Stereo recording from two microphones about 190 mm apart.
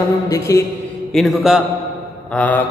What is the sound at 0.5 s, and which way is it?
Speech, 15° left (ahead or behind).